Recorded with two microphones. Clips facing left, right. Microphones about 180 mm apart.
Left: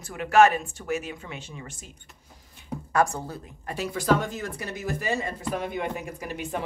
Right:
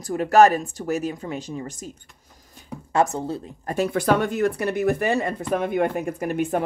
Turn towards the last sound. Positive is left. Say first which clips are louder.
# right 9 dB
turn(degrees=-50)  # may be behind; listen again after turning